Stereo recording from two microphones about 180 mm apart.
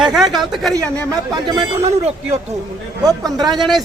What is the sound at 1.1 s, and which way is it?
Speech, 25° right (ahead or behind).